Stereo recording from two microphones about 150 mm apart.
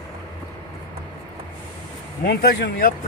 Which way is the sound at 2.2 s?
90° left.